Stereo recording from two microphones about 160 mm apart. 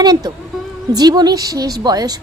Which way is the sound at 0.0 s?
25° right (ahead or behind).